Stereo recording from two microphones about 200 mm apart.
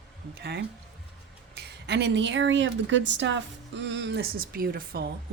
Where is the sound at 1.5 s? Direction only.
55° right (ahead or behind).